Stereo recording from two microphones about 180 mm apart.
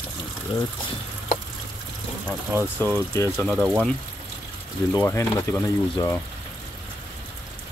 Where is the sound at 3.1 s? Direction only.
15° left (ahead or behind).